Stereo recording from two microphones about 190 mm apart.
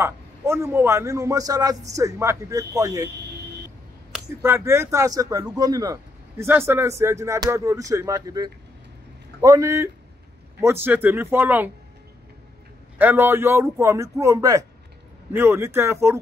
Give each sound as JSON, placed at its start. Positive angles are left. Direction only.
{"t": 0.0, "sound": "speech", "side_deg": -10}
{"t": 4.1, "sound": "speech", "side_deg": -15}
{"t": 12.9, "sound": "speech", "side_deg": -10}